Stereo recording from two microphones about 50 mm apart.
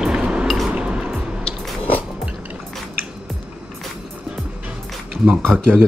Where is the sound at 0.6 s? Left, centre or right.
Centre.